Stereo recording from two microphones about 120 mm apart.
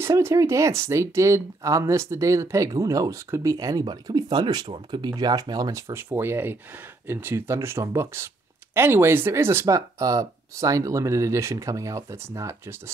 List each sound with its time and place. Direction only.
0.0 s speech: 25° right (ahead or behind)